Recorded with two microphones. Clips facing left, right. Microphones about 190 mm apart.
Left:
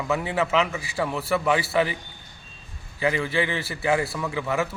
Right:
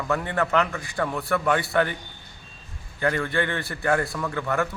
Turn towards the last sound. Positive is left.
turn(degrees=5)  # may be behind; listen again after turning